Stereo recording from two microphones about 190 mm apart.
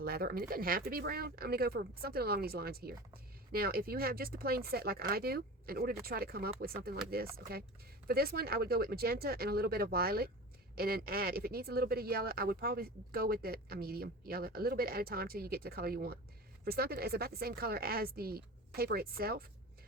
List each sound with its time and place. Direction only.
0.0 s speech: 50° right (ahead or behind)